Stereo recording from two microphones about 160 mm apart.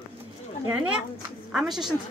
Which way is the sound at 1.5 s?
Centre (ahead or behind).